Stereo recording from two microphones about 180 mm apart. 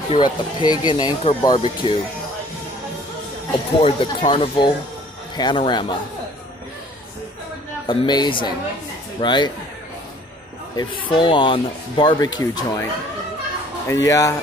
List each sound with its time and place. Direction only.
0.1 s speech: 25° left (ahead or behind)
3.8 s speech: 30° left (ahead or behind)
7.8 s speech: 25° left (ahead or behind)
10.8 s speech: 25° left (ahead or behind)
13.8 s speech: 15° left (ahead or behind)